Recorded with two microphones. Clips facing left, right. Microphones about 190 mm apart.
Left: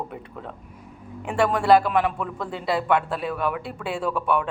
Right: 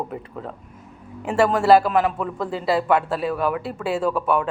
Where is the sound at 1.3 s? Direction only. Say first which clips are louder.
Right 3 dB; 5° right (ahead or behind).